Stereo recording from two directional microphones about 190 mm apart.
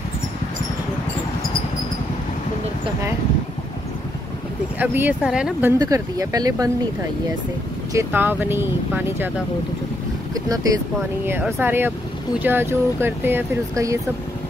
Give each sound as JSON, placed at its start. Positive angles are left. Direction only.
{"t": 4.7, "sound": "speech", "side_deg": -10}
{"t": 7.9, "sound": "speech", "side_deg": -10}
{"t": 10.3, "sound": "speech", "side_deg": -20}